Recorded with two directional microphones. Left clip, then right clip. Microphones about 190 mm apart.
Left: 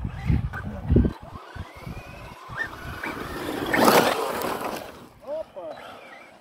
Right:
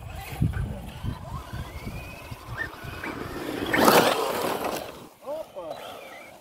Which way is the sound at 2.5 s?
50° left (ahead or behind).